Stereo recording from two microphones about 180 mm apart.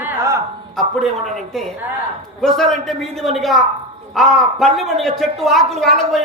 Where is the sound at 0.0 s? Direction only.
15° right (ahead or behind).